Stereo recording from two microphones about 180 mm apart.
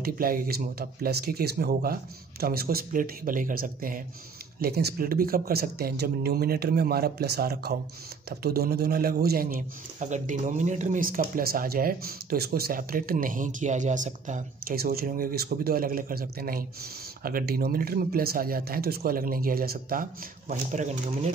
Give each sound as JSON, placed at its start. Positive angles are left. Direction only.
{"t": 0.0, "sound": "a man's voice", "side_deg": -55}
{"t": 4.6, "sound": "a man's voice", "side_deg": -60}
{"t": 20.4, "sound": "speech", "side_deg": -40}